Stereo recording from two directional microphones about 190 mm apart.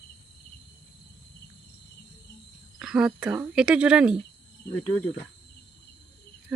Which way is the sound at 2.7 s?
5° right (ahead or behind).